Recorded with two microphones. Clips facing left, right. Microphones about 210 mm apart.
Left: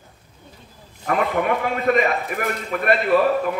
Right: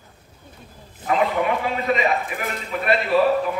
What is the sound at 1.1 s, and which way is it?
A man's voice, 50° left (ahead or behind).